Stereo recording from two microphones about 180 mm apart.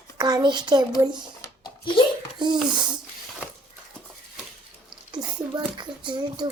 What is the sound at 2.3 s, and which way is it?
Speech, 25° right (ahead or behind).